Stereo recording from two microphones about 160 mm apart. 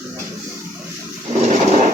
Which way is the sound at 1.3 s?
45° right (ahead or behind).